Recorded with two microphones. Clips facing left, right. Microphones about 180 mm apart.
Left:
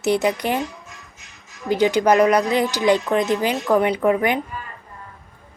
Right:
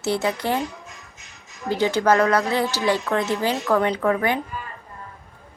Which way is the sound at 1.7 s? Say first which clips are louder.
Left 3 dB; 15° left (ahead or behind).